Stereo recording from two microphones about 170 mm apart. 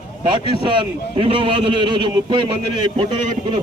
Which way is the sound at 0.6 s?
30° right (ahead or behind).